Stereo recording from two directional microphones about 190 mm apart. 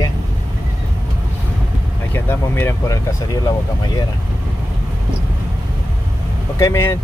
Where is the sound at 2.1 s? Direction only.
15° left (ahead or behind).